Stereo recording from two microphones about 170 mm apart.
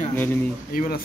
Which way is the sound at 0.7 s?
60° left (ahead or behind).